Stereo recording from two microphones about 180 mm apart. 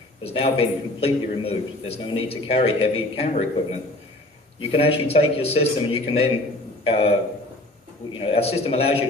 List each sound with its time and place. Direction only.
0.2 s a man's voice: 30° left (ahead or behind)
8.1 s a man's voice: 30° left (ahead or behind)